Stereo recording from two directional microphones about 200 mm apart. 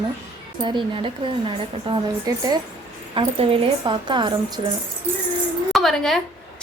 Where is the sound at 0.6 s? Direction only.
25° right (ahead or behind).